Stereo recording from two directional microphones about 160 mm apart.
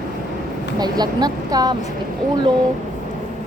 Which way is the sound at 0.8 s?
25° right (ahead or behind).